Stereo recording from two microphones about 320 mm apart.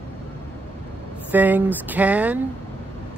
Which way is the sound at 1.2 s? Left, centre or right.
Centre.